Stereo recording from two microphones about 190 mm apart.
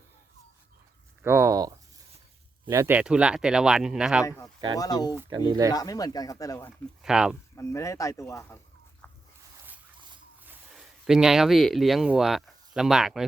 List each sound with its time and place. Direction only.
1.2 s a sound: 15° right (ahead or behind)
2.6 s speech: 15° right (ahead or behind)
4.8 s speech: 20° left (ahead or behind)
5.3 s speech: 25° right (ahead or behind)
5.7 s speech: 20° left (ahead or behind)
7.0 s speech: 5° right (ahead or behind)
7.5 s speech: 15° left (ahead or behind)
10.4 s speech: 5° right (ahead or behind)